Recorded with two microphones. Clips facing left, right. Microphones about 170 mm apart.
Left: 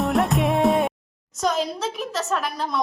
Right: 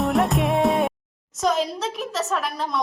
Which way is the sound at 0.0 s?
Centre (ahead or behind).